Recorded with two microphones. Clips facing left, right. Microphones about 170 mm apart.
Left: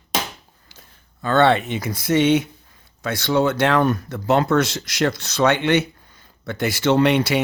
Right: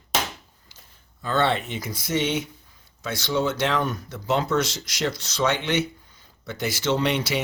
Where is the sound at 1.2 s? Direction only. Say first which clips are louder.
Left 7 dB; 70° left (ahead or behind).